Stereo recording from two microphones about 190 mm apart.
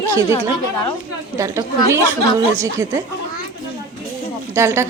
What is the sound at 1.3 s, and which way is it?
Speech, 15° right (ahead or behind).